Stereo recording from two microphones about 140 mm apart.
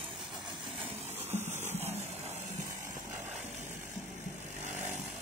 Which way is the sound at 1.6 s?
15° right (ahead or behind).